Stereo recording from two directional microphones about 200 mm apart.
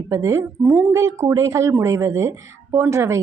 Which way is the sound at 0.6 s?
5° right (ahead or behind).